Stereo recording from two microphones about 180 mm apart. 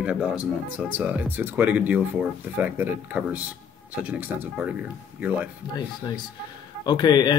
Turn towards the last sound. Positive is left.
turn(degrees=25)  # may be behind; listen again after turning